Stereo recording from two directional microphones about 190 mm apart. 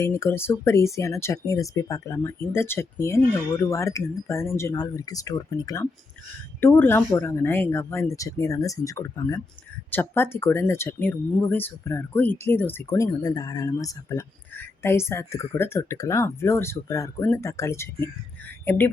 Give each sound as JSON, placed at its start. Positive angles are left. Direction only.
{"t": 0.0, "sound": "speech", "side_deg": 15}